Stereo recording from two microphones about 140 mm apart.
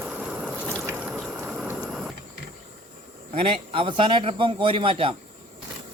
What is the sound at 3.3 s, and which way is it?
A man's voice, 45° right (ahead or behind).